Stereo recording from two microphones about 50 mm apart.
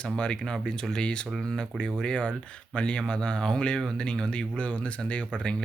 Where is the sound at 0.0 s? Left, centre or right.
Centre.